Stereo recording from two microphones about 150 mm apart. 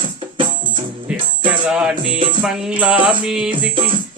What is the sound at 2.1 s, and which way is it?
Music, 35° right (ahead or behind).